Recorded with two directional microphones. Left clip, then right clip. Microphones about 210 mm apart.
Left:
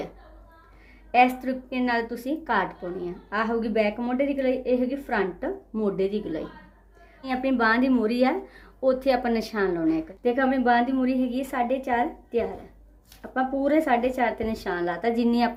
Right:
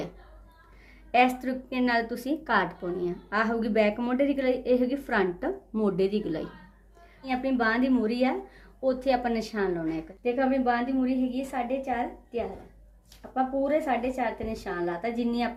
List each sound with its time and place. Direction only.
1.1 s a woman's voice: 15° right (ahead or behind)
7.2 s speech: 10° left (ahead or behind)
10.2 s a woman's voice: 35° left (ahead or behind)